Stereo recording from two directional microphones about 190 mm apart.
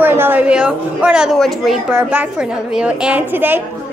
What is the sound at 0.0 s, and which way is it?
A woman's voice, 10° right (ahead or behind).